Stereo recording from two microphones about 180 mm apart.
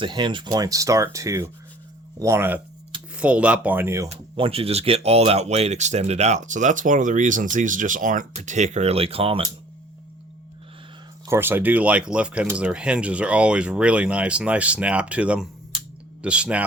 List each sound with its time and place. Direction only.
0.0 s speech: 25° right (ahead or behind)
4.1 s speech: 30° right (ahead or behind)
11.3 s speech: 10° right (ahead or behind)